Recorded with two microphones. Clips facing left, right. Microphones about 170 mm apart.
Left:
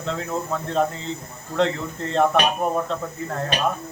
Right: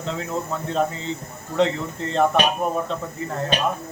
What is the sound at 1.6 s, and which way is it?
Speech, centre (ahead or behind).